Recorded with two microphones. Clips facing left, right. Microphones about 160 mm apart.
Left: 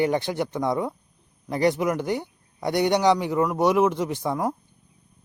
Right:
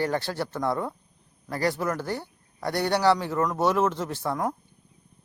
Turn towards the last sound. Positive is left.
turn(degrees=10)  # may be behind; listen again after turning